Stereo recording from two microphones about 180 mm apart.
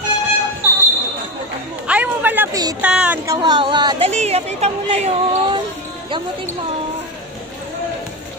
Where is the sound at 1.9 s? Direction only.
10° right (ahead or behind).